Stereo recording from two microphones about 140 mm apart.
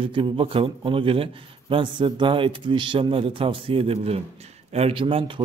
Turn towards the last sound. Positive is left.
turn(degrees=-40)  # may be behind; listen again after turning